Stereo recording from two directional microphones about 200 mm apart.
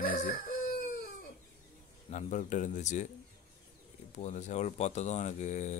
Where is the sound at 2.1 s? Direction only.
35° left (ahead or behind).